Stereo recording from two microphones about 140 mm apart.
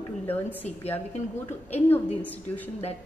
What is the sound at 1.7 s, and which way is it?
A woman's voice, 10° left (ahead or behind).